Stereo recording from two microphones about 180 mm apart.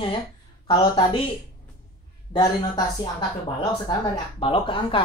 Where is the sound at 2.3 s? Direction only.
20° left (ahead or behind).